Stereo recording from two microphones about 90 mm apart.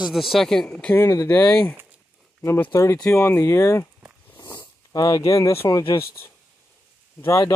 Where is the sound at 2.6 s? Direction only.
30° left (ahead or behind).